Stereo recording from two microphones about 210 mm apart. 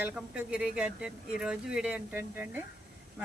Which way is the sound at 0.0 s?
5° right (ahead or behind).